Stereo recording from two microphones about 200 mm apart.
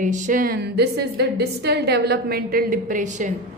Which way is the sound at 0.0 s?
40° right (ahead or behind).